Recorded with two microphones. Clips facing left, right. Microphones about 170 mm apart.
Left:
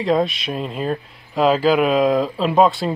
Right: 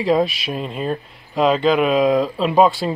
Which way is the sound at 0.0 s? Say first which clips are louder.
Right 1 dB; centre (ahead or behind).